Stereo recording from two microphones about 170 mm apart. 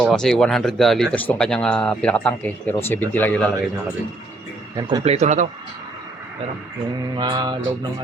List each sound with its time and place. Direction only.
0.0 s speech: centre (ahead or behind)
4.8 s mantra: 25° right (ahead or behind)
5.0 s speech: 40° right (ahead or behind)
7.2 s mantra: 25° right (ahead or behind)